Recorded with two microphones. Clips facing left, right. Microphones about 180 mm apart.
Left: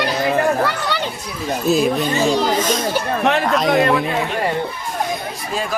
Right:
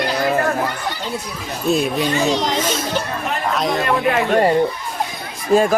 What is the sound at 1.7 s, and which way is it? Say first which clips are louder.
Speech: left 1 dB; centre (ahead or behind).